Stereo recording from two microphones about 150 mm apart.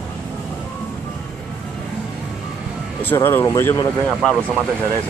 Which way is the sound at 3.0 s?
15° left (ahead or behind).